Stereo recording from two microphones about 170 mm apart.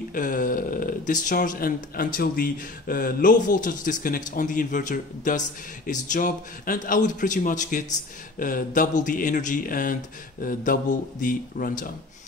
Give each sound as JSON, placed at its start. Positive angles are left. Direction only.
{"t": 0.1, "sound": "speech", "side_deg": 50}